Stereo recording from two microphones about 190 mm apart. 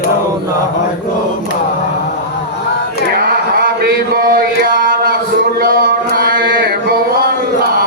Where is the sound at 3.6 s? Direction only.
55° right (ahead or behind).